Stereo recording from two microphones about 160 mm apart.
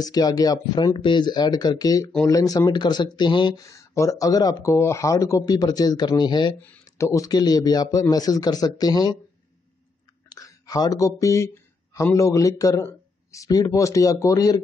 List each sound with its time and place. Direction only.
0.0 s speech: 25° left (ahead or behind)
6.6 s speech: 15° left (ahead or behind)
10.3 s speech: 25° left (ahead or behind)